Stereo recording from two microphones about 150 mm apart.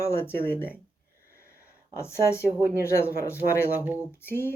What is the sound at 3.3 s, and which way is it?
Speech, 10° right (ahead or behind).